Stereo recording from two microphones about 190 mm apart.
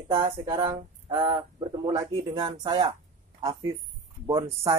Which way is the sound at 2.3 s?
25° right (ahead or behind).